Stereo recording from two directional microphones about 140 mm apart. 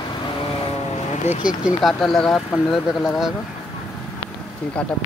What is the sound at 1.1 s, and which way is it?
Speech, 55° left (ahead or behind).